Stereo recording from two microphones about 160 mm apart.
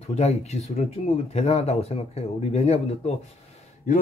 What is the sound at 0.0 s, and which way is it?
Speech, 40° left (ahead or behind).